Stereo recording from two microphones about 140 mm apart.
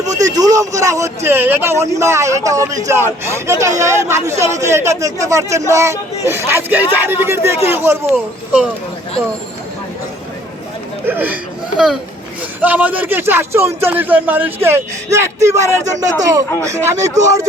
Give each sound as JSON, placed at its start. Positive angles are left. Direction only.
{"t": 0.0, "sound": "a man's voice", "side_deg": -25}
{"t": 11.0, "sound": "speech", "side_deg": -15}
{"t": 12.6, "sound": "a man's voice", "side_deg": -10}